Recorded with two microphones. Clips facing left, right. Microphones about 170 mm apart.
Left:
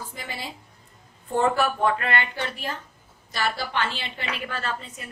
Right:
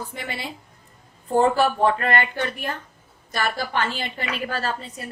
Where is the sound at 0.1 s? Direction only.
65° right (ahead or behind).